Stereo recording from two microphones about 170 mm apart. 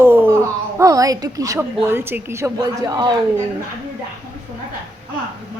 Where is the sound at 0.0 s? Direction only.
15° right (ahead or behind).